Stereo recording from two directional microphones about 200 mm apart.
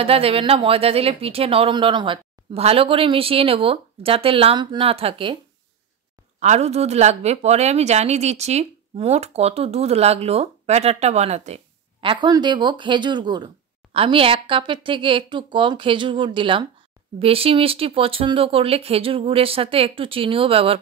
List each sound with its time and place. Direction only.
0.0 s speech: 30° right (ahead or behind)
6.4 s a woman's voice: 35° right (ahead or behind)